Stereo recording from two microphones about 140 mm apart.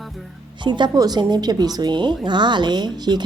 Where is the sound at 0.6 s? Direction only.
35° right (ahead or behind).